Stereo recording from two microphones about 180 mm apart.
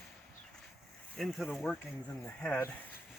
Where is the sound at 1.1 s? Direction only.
Centre (ahead or behind).